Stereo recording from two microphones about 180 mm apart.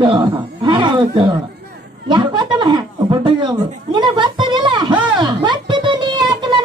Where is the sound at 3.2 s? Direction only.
25° right (ahead or behind).